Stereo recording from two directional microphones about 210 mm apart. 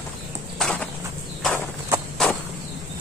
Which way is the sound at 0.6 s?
5° left (ahead or behind).